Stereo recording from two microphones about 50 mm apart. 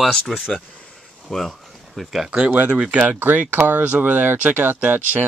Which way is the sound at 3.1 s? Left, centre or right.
Right.